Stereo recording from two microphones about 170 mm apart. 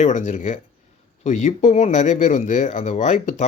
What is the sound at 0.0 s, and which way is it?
Speech, 45° left (ahead or behind).